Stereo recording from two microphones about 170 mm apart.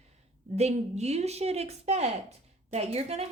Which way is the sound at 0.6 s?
40° right (ahead or behind).